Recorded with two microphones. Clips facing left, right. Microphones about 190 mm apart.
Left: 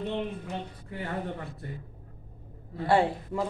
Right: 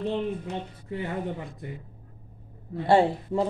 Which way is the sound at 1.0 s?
15° right (ahead or behind).